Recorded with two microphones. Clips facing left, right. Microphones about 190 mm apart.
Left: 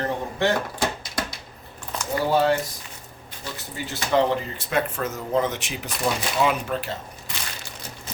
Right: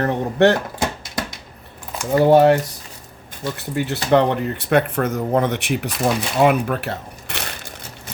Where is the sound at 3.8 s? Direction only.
65° right (ahead or behind).